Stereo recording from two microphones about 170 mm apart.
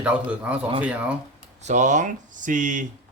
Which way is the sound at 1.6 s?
45° right (ahead or behind).